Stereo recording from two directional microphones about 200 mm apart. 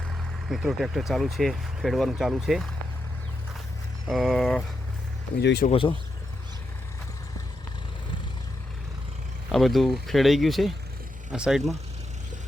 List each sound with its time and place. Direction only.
0.1 s speech: centre (ahead or behind)
4.1 s speech: centre (ahead or behind)
5.4 s speech: 60° left (ahead or behind)
9.5 s speech: centre (ahead or behind)